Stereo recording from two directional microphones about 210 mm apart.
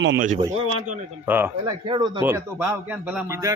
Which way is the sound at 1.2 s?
10° right (ahead or behind).